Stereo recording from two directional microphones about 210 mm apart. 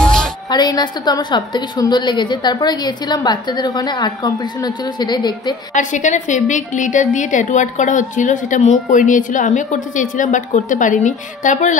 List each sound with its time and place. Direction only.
0.0 s music: 5° left (ahead or behind)
0.5 s a woman's voice: 20° left (ahead or behind)
5.7 s a woman's voice: 35° left (ahead or behind)